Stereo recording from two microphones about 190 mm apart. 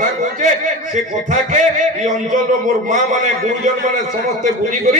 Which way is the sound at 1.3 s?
40° right (ahead or behind).